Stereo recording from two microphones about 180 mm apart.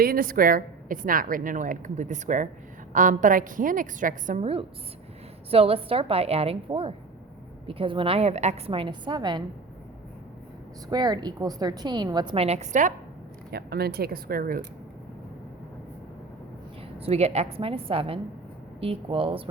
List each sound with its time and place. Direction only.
0.0 s a woman's voice: 55° right (ahead or behind); by 9.4 s 25° right (ahead or behind)
10.8 s a woman's voice: 20° right (ahead or behind); by 12.9 s 40° right (ahead or behind)
13.5 s speech: 60° right (ahead or behind)
17.0 s a woman's voice: 35° right (ahead or behind)